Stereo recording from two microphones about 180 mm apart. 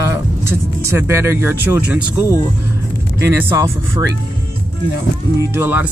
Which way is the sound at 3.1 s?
15° right (ahead or behind).